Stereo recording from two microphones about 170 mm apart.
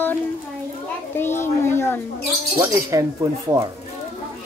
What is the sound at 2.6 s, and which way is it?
Speech, 15° right (ahead or behind).